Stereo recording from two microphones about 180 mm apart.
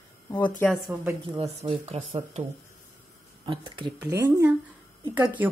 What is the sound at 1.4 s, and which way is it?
Speech, 35° right (ahead or behind).